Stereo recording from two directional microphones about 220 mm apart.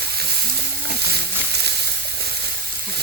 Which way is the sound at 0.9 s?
45° right (ahead or behind).